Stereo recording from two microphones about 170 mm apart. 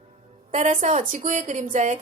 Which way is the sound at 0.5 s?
45° right (ahead or behind).